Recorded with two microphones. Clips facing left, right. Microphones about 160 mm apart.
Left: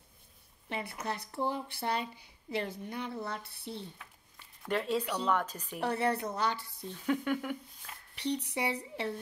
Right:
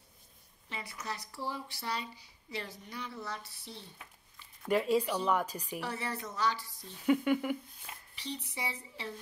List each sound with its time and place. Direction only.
0.7 s speech: 55° left (ahead or behind)
4.6 s speech: 5° right (ahead or behind)
5.8 s speech: 60° left (ahead or behind)
6.9 s speech: 5° right (ahead or behind)
8.1 s speech: 65° left (ahead or behind)